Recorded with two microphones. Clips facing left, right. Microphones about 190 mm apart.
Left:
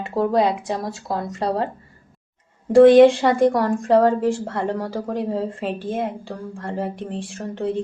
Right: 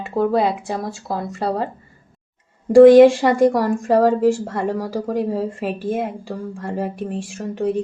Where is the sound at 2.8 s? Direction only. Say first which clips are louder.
Right 2 dB; 10° right (ahead or behind).